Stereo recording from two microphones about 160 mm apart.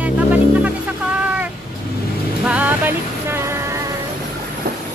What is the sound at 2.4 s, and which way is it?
Vehicle, 10° right (ahead or behind).